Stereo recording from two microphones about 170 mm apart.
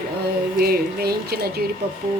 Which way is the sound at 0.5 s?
65° right (ahead or behind).